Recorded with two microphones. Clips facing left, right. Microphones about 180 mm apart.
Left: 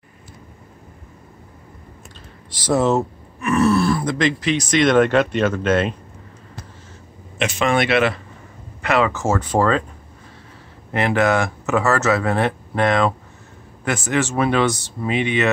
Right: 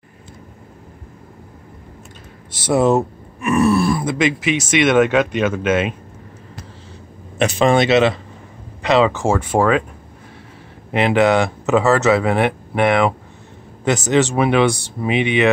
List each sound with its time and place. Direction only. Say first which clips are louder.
2.7 s speech: right 3 dB; 15° right (ahead or behind)
7.3 s speech: right 4 dB; 35° right (ahead or behind); by 9.8 s 10° right (ahead or behind)
10.9 s speech: right 3 dB; 20° right (ahead or behind)